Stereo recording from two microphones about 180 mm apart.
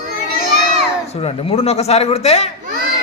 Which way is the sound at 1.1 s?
35° left (ahead or behind).